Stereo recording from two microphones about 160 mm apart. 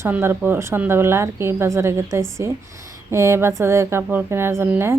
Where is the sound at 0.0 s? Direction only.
15° right (ahead or behind).